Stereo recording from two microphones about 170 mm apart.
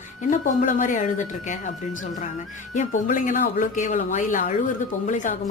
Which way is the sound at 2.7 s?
50° left (ahead or behind).